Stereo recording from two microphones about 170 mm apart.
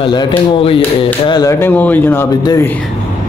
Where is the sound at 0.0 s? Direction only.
25° left (ahead or behind).